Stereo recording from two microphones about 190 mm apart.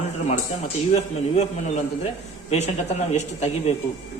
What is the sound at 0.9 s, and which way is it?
Speech, 35° left (ahead or behind).